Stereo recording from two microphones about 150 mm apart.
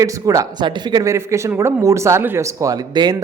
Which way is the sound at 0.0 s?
20° right (ahead or behind).